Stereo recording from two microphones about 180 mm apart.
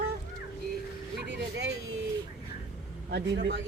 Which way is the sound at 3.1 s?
70° right (ahead or behind).